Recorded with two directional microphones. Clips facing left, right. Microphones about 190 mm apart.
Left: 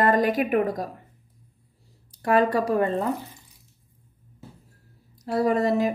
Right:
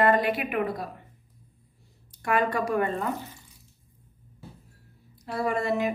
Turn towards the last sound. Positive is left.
turn(degrees=40)  # may be behind; listen again after turning